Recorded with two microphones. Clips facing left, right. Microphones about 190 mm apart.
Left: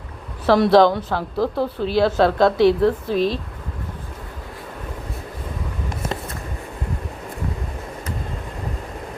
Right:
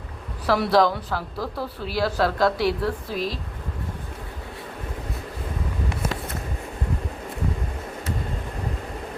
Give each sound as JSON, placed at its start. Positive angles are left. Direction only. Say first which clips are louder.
{"t": 0.4, "sound": "speech", "louder": "left 6 dB", "side_deg": 25}